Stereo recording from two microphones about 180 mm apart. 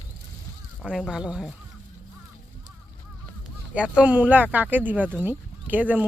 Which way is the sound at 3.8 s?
5° right (ahead or behind).